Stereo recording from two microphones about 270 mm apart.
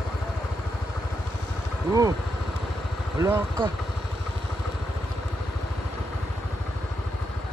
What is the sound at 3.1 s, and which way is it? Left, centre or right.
Speech, centre.